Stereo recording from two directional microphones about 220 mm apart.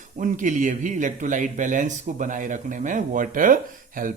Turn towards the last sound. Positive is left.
turn(degrees=-40)  # may be behind; listen again after turning